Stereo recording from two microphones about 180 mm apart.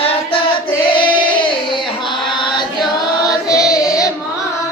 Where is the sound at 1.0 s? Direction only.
25° left (ahead or behind).